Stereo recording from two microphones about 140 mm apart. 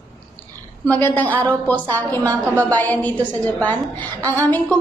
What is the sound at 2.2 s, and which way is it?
Speech, 25° right (ahead or behind).